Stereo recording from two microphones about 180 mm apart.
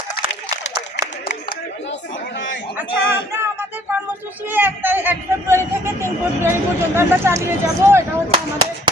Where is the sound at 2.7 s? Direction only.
15° right (ahead or behind).